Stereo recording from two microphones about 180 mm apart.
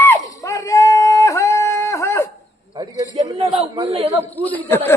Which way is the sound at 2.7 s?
25° right (ahead or behind).